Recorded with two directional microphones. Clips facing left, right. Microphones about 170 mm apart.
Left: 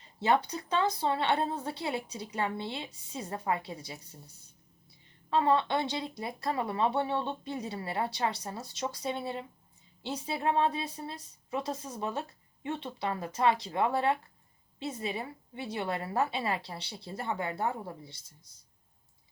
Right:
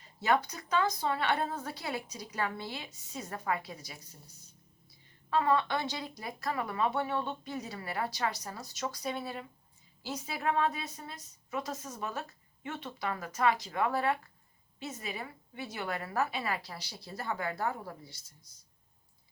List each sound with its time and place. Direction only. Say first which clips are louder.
0.0 s a woman's voice: left 2 dB; 30° left (ahead or behind)
5.3 s a woman's voice: left 2 dB; 25° left (ahead or behind)